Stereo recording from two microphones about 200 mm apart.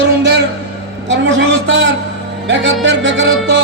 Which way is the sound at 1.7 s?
70° right (ahead or behind).